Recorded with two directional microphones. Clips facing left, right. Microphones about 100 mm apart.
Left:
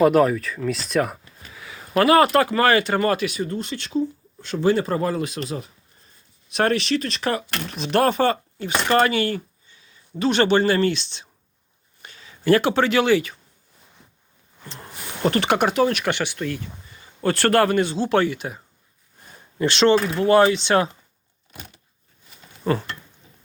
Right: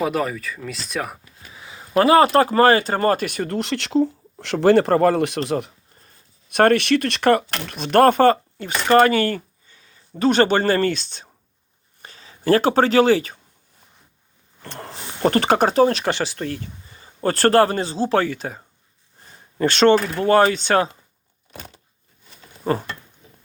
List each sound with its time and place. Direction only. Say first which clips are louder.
0.0 s speech: left 6 dB; centre (ahead or behind)
1.5 s a sound: left 1 dB; 25° right (ahead or behind)
2.0 s speech: right 2 dB; 25° right (ahead or behind)
3.2 s speech: right 2 dB; 65° right (ahead or behind)
6.5 s speech: right 5 dB; 55° right (ahead or behind); by 13.3 s 35° right (ahead or behind)
14.6 s a sound: right 5 dB; 75° right (ahead or behind)
14.9 s speech: right 2 dB; 40° right (ahead or behind)